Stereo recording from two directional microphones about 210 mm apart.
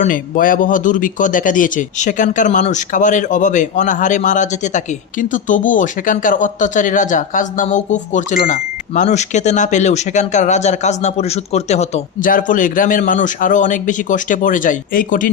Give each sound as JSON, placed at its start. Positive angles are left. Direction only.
{"t": 0.0, "sound": "speech", "side_deg": 40}